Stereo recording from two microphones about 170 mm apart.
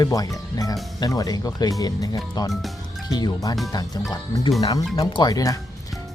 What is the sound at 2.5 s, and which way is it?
Speech, centre (ahead or behind).